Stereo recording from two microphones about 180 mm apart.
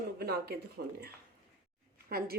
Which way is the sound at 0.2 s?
60° right (ahead or behind).